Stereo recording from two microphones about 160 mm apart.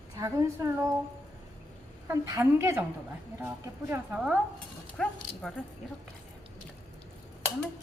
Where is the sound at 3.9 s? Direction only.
5° right (ahead or behind).